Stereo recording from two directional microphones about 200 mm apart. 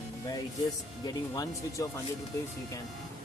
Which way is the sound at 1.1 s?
20° left (ahead or behind).